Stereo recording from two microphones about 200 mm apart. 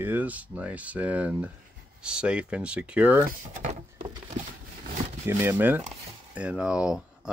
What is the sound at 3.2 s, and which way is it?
Drawer open or close, 35° right (ahead or behind).